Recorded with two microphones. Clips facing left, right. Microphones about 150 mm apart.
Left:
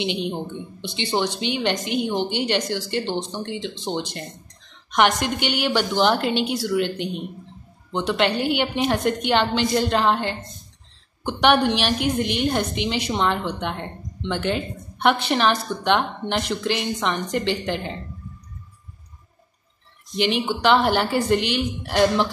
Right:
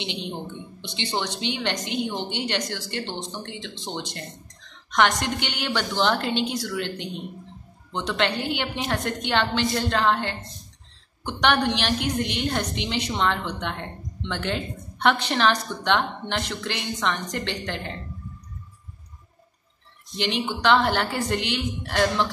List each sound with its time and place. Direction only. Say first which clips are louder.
0.0 s a woman's voice: left 6 dB; 15° left (ahead or behind)
20.2 s a woman's voice: left 4 dB; 10° left (ahead or behind)